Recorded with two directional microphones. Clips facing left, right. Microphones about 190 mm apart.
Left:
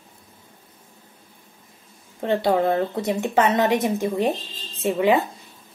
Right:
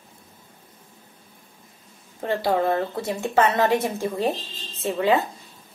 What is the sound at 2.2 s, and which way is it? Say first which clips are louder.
Speech: left 2 dB; 20° left (ahead or behind).